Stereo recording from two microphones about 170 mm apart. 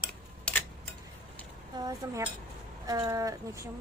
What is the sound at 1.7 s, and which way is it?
A woman's voice, 20° right (ahead or behind).